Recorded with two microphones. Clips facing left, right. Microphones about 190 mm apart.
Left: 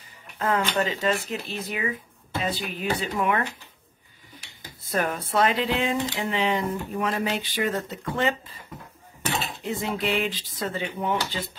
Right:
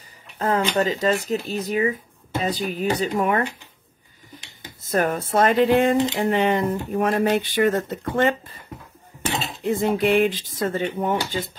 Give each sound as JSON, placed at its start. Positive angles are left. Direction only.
{"t": 0.4, "sound": "speech", "side_deg": -35}
{"t": 4.8, "sound": "speech", "side_deg": -45}
{"t": 9.6, "sound": "speech", "side_deg": -50}